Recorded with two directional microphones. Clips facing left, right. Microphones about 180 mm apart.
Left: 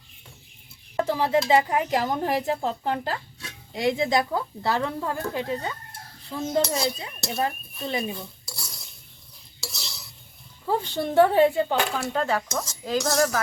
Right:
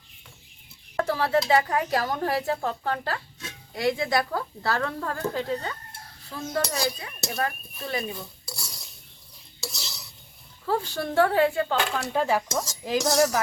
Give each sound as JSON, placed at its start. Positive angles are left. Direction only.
{"t": 0.9, "sound": "speech", "side_deg": 15}
{"t": 8.4, "sound": "cutlery", "side_deg": -5}
{"t": 9.7, "sound": "stir", "side_deg": 0}
{"t": 10.7, "sound": "speech", "side_deg": 20}
{"t": 12.1, "sound": "cutlery", "side_deg": -10}